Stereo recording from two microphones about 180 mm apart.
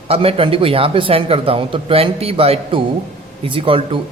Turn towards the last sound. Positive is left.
turn(degrees=-30)  # may be behind; listen again after turning